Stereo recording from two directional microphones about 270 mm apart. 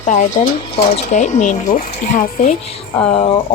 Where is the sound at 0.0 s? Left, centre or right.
Left.